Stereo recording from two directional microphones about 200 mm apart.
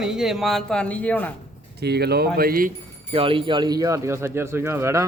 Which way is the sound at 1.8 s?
55° right (ahead or behind).